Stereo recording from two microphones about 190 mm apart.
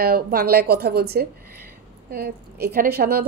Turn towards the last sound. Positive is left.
turn(degrees=-55)  # may be behind; listen again after turning